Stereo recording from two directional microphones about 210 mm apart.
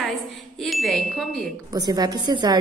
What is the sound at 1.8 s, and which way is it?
Speech, 20° right (ahead or behind).